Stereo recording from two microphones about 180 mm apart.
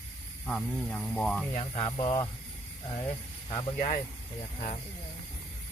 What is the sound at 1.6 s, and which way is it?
Speech, 35° left (ahead or behind).